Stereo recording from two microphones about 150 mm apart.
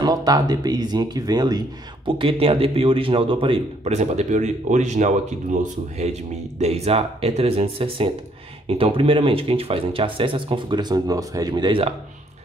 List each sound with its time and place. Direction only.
0.0 s speech: 25° right (ahead or behind)
2.0 s speech: 35° right (ahead or behind)